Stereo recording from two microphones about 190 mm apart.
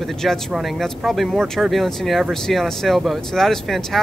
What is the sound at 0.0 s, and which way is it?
Speech, centre (ahead or behind).